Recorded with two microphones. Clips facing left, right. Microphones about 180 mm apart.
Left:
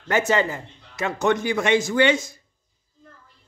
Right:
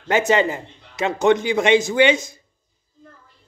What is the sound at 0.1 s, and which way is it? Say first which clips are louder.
A man's voice: right 3 dB; 20° right (ahead or behind).